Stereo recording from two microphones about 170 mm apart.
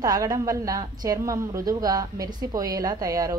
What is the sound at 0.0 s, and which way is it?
A woman's voice, 20° right (ahead or behind).